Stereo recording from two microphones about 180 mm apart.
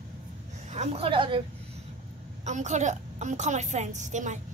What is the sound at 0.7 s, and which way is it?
Speech, 35° right (ahead or behind).